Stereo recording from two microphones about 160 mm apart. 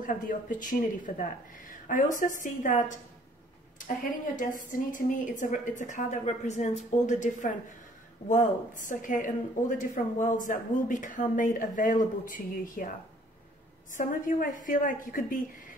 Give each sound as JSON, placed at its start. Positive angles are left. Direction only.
{"t": 0.0, "sound": "speech", "side_deg": 55}
{"t": 4.7, "sound": "a woman's voice", "side_deg": 55}
{"t": 13.9, "sound": "speech", "side_deg": 55}